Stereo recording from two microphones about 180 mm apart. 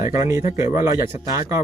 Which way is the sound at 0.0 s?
15° right (ahead or behind).